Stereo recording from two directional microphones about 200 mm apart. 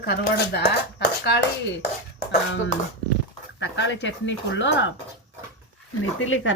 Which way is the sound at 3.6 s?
60° left (ahead or behind).